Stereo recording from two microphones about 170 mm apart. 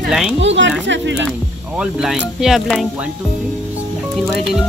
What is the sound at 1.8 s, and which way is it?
Speech, 5° right (ahead or behind).